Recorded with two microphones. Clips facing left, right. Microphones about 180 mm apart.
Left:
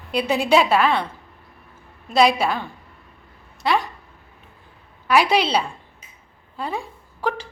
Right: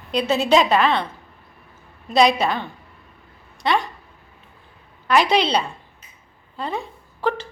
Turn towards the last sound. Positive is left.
turn(degrees=10)  # may be behind; listen again after turning